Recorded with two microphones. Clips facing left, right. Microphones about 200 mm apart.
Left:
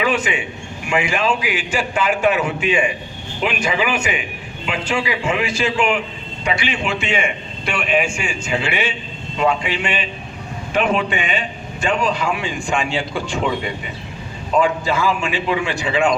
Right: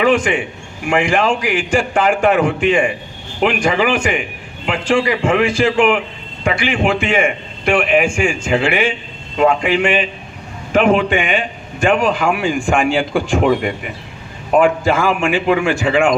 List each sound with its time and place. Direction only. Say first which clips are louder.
0.0 s a man's voice: right 6 dB; 50° right (ahead or behind)